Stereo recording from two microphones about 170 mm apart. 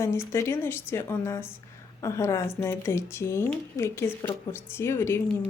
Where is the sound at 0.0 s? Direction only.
15° left (ahead or behind).